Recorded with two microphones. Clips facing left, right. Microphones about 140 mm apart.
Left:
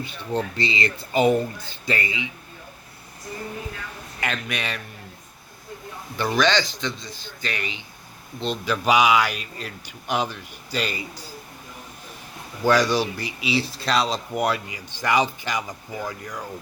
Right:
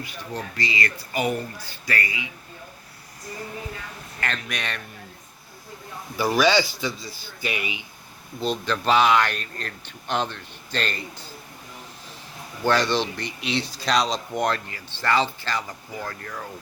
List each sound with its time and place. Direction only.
0.0 s speech: 25° left (ahead or behind)
4.2 s a man's voice: 5° left (ahead or behind)
6.1 s speech: 5° right (ahead or behind)
8.6 s speech: 10° left (ahead or behind)
12.6 s speech: 10° left (ahead or behind)